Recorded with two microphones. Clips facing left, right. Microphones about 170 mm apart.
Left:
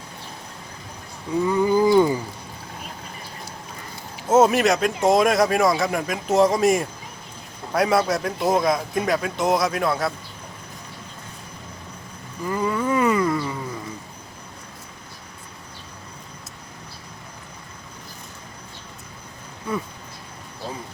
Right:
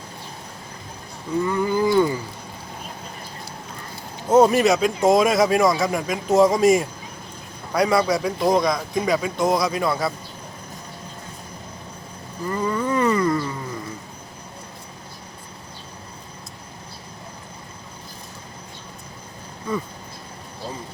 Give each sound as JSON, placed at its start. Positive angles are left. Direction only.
{"t": 1.5, "sound": "a sound", "side_deg": 15}
{"t": 4.3, "sound": "speech", "side_deg": 5}
{"t": 12.5, "sound": "wild animals", "side_deg": 10}